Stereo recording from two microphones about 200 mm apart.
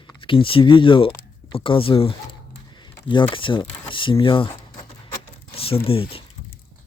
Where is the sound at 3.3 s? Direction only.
25° left (ahead or behind).